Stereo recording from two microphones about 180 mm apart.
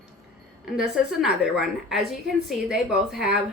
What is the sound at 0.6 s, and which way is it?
A woman's voice, 5° right (ahead or behind).